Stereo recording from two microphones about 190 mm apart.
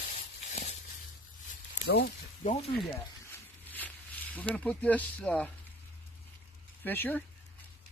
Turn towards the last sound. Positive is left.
turn(degrees=10)  # may be behind; listen again after turning